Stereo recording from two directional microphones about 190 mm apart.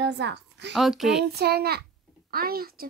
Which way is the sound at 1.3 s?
55° right (ahead or behind).